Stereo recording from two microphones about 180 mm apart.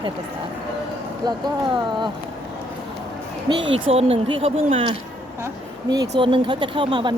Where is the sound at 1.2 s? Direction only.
20° right (ahead or behind).